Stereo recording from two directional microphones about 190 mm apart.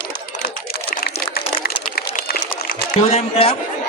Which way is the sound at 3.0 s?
35° left (ahead or behind).